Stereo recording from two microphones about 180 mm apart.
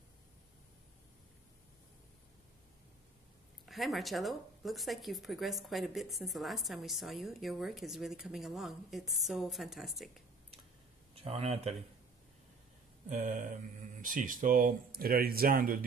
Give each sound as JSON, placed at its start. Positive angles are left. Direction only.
{"t": 3.6, "sound": "speech", "side_deg": 0}
{"t": 11.2, "sound": "speech", "side_deg": -35}
{"t": 13.1, "sound": "speech", "side_deg": -45}